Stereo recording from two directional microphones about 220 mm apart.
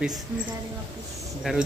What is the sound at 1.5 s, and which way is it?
Speech, centre (ahead or behind).